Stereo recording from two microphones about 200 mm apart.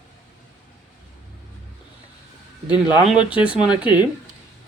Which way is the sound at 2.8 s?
5° right (ahead or behind).